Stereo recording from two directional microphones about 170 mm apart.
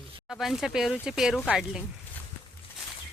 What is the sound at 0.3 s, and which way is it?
Speech, centre (ahead or behind).